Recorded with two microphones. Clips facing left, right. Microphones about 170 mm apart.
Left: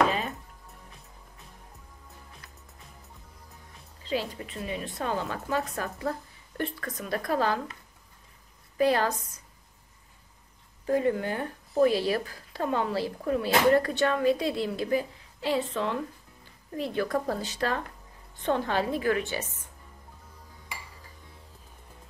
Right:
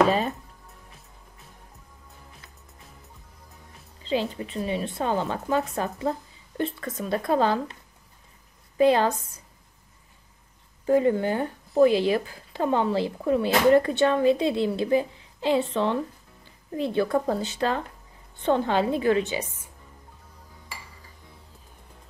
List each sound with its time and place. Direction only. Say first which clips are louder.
4.0 s a woman's voice: right 4 dB; 25° right (ahead or behind)
8.7 s a woman's voice: right 5 dB; 25° right (ahead or behind)
10.9 s a woman's voice: right 5 dB; 25° right (ahead or behind)